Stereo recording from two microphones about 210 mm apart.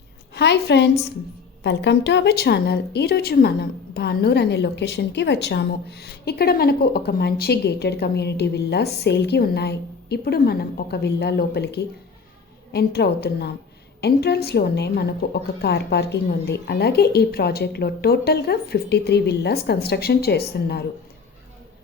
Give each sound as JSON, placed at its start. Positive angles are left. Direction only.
{"t": 0.3, "sound": "a woman's voice", "side_deg": 50}